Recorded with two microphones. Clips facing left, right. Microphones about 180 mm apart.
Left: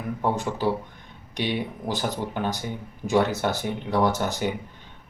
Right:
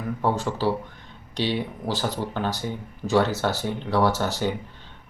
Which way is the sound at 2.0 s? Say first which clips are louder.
Even; 15° left (ahead or behind).